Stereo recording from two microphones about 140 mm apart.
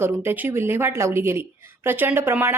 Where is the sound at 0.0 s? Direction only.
15° right (ahead or behind).